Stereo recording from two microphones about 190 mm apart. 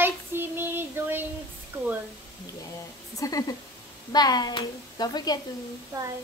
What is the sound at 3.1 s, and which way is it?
Speech, 20° left (ahead or behind).